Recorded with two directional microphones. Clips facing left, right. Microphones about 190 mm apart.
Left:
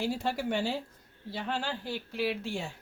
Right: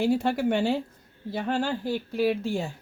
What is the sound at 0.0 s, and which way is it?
Speech, 60° right (ahead or behind).